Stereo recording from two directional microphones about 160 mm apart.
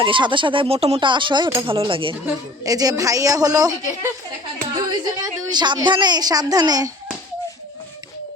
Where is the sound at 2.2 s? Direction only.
20° right (ahead or behind).